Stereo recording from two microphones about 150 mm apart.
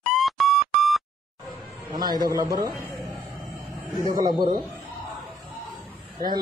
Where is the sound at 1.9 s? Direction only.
25° right (ahead or behind).